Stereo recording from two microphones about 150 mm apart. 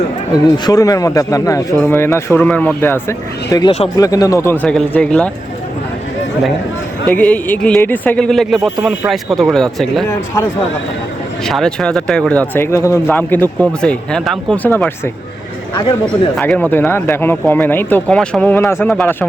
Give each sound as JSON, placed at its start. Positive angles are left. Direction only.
{"t": 0.4, "sound": "speech", "side_deg": 25}
{"t": 4.6, "sound": "speech", "side_deg": 10}
{"t": 7.1, "sound": "speech", "side_deg": 10}
{"t": 11.4, "sound": "speech", "side_deg": 5}
{"t": 15.7, "sound": "speech", "side_deg": 30}
{"t": 16.4, "sound": "speech", "side_deg": 10}